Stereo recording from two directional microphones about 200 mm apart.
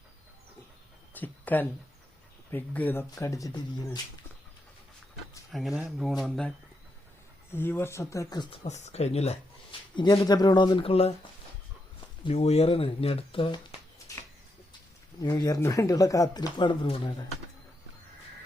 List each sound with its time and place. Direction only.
1.1 s a sound: 10° left (ahead or behind)
2.5 s speech: 10° left (ahead or behind)
5.5 s speech: centre (ahead or behind)
7.5 s speech: 10° left (ahead or behind)
8.6 s speech: 35° left (ahead or behind)
9.9 s speech: 20° left (ahead or behind)
12.2 s speech: 30° left (ahead or behind)
15.2 s speech: 20° left (ahead or behind)